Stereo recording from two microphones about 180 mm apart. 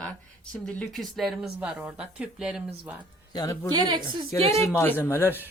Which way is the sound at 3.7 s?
25° right (ahead or behind).